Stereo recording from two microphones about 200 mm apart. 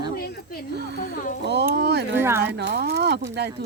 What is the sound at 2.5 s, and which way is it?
Speech, 55° right (ahead or behind).